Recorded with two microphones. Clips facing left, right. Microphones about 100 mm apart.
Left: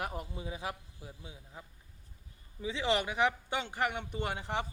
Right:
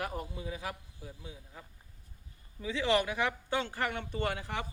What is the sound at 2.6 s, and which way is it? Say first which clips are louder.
Speech: right 2 dB; 20° left (ahead or behind).